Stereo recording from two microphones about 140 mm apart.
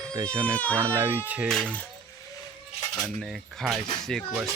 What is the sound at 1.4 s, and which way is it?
Speech, 5° left (ahead or behind).